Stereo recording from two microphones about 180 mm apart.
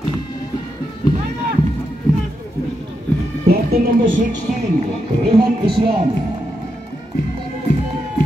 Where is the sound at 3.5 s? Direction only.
60° right (ahead or behind).